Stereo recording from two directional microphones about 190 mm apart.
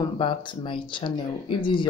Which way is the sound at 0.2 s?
25° left (ahead or behind).